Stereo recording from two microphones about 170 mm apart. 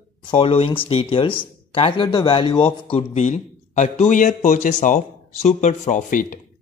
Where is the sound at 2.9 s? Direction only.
40° left (ahead or behind).